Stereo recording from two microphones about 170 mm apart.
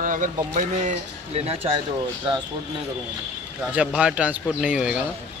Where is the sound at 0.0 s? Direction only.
50° right (ahead or behind).